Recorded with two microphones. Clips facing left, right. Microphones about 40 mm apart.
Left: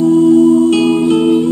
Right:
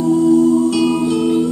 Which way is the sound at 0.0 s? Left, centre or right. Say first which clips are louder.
Left 4 dB; left.